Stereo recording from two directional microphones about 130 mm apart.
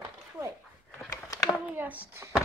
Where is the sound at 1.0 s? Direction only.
25° left (ahead or behind).